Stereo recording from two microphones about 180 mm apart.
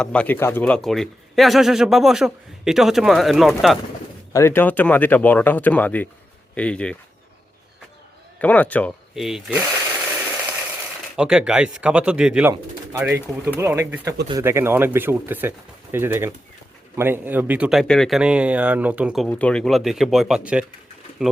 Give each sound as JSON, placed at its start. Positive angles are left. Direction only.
{"t": 0.0, "sound": "speech", "side_deg": 5}
{"t": 4.3, "sound": "speech", "side_deg": 15}
{"t": 8.4, "sound": "speech", "side_deg": 10}
{"t": 9.1, "sound": "speech", "side_deg": 0}
{"t": 11.2, "sound": "speech", "side_deg": -5}